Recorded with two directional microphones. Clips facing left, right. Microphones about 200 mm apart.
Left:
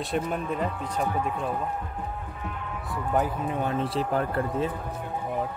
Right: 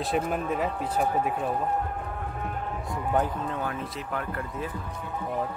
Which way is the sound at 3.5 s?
25° left (ahead or behind).